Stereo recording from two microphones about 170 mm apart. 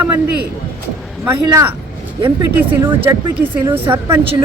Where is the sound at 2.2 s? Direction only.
15° right (ahead or behind).